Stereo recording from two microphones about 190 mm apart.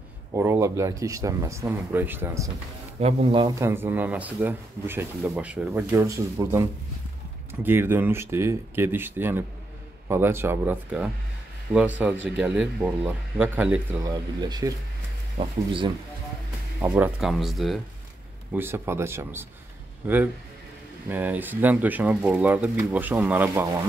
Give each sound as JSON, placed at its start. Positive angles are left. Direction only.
{"t": 0.3, "sound": "speech", "side_deg": -15}
{"t": 3.0, "sound": "speech", "side_deg": -35}
{"t": 14.0, "sound": "speech", "side_deg": -20}
{"t": 16.8, "sound": "speech", "side_deg": -10}
{"t": 18.5, "sound": "speech", "side_deg": -10}
{"t": 21.1, "sound": "speech", "side_deg": -10}